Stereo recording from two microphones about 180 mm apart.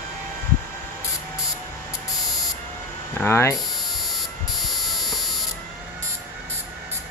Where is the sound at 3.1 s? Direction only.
15° left (ahead or behind).